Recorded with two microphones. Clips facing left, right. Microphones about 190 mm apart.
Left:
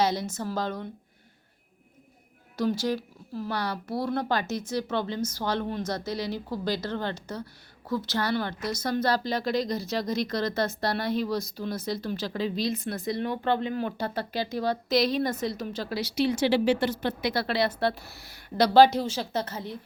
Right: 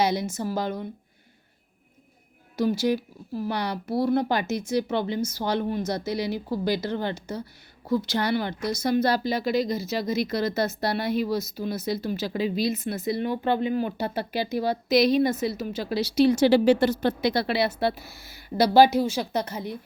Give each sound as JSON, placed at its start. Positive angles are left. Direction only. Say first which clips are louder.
{"t": 0.0, "sound": "speech", "louder": "right 2 dB", "side_deg": -10}
{"t": 2.6, "sound": "speech", "louder": "right 3 dB", "side_deg": -10}
{"t": 15.9, "sound": "speech", "louder": "right 7 dB", "side_deg": -30}
{"t": 17.2, "sound": "a woman's voice", "louder": "right 4 dB", "side_deg": -25}
{"t": 17.4, "sound": "speech", "louder": "right 2 dB", "side_deg": -10}